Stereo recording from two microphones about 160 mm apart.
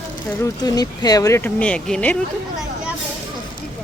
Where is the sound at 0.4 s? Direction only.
25° left (ahead or behind); by 2.2 s 5° left (ahead or behind).